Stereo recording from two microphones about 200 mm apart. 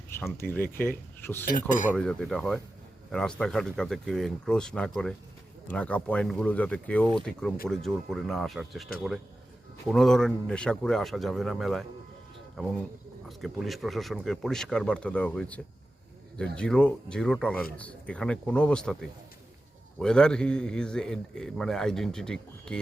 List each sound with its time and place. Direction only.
0.1 s speech: 10° left (ahead or behind)
1.7 s speech: 40° left (ahead or behind)
2.0 s a man's voice: 5° left (ahead or behind)